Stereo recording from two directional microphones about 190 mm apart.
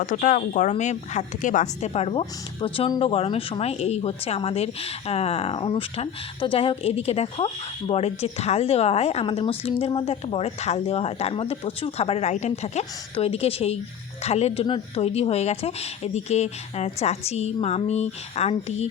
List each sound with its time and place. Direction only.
0.0 s speech: 40° left (ahead or behind)